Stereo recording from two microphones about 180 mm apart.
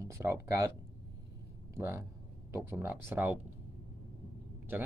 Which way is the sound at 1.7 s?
15° right (ahead or behind).